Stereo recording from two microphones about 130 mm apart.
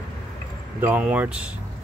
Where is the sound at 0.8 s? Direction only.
10° right (ahead or behind).